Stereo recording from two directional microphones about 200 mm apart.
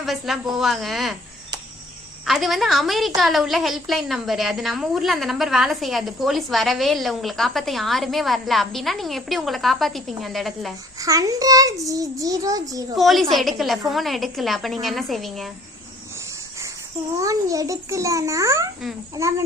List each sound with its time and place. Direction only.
0.0 s a woman's voice: centre (ahead or behind)
2.2 s a woman's voice: centre (ahead or behind)
11.0 s a child's voice: 15° right (ahead or behind)
13.0 s a woman's voice: centre (ahead or behind)
17.2 s a child's voice: 15° right (ahead or behind)